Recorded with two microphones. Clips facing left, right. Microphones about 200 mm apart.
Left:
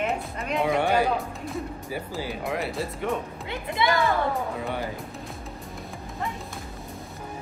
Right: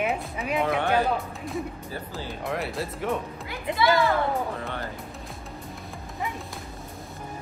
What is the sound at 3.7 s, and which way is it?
Speech, 20° right (ahead or behind).